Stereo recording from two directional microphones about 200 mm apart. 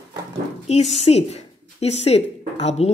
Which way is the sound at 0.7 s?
35° left (ahead or behind).